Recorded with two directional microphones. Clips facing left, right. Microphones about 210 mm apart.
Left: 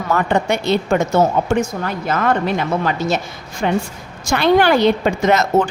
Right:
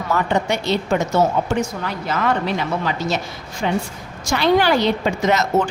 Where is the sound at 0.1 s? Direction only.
55° left (ahead or behind).